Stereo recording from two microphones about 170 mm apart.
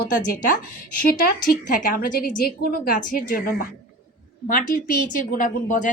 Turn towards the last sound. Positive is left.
turn(degrees=50)  # may be behind; listen again after turning